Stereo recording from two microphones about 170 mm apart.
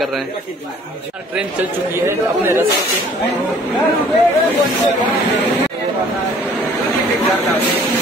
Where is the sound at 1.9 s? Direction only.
15° right (ahead or behind).